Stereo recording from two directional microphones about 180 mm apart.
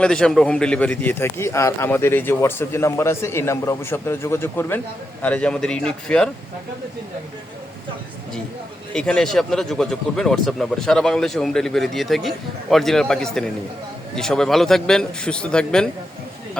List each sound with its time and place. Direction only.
0.0 s a man's voice: 5° left (ahead or behind)
8.9 s speech: 5° left (ahead or behind)